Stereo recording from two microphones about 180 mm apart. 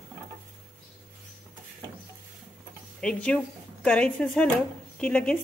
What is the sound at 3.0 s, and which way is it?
Speech, 5° left (ahead or behind).